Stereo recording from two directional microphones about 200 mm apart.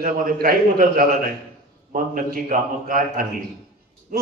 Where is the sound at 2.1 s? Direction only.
45° right (ahead or behind).